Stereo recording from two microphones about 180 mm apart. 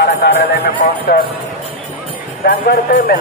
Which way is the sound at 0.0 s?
70° left (ahead or behind).